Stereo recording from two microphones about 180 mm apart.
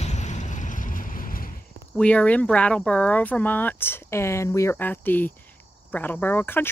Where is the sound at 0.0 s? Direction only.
40° left (ahead or behind).